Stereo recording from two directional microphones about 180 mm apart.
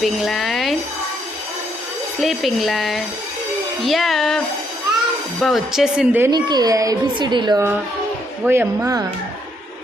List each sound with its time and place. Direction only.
0.0 s speech: centre (ahead or behind)
2.2 s speech: centre (ahead or behind)
6.3 s a child's voice: 20° right (ahead or behind)